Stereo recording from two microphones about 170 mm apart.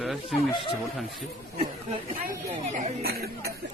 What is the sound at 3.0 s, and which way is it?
Speech, 70° right (ahead or behind).